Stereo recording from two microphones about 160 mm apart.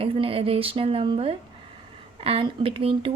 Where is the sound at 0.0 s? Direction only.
35° right (ahead or behind).